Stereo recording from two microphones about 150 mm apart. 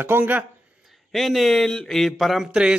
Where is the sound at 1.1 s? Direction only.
Centre (ahead or behind).